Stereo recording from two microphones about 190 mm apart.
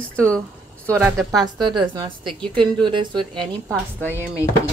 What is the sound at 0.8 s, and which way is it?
Speech, 10° right (ahead or behind).